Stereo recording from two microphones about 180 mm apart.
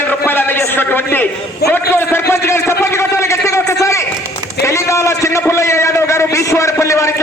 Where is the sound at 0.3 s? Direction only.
10° left (ahead or behind).